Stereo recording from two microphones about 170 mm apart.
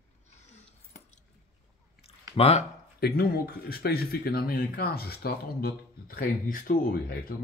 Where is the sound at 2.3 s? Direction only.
35° left (ahead or behind).